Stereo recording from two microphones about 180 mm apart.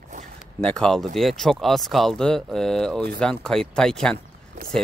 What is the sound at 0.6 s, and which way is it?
Speech, 5° left (ahead or behind).